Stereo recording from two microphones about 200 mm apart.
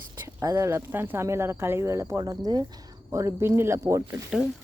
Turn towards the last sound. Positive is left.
turn(degrees=-5)  # may be behind; listen again after turning